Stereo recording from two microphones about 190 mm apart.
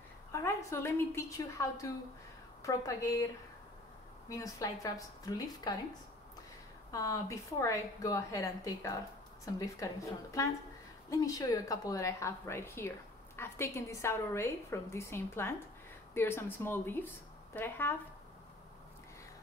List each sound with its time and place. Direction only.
0.3 s a woman's voice: 15° left (ahead or behind)
4.3 s a woman's voice: 15° left (ahead or behind)
6.9 s a woman's voice: 15° left (ahead or behind)